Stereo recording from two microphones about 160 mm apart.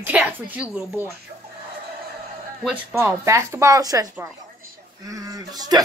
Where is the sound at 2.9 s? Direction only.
20° right (ahead or behind).